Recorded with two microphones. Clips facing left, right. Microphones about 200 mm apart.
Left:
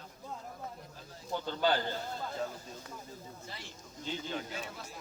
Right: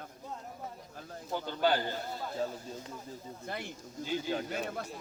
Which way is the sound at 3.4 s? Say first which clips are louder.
Right 8 dB; 60° right (ahead or behind).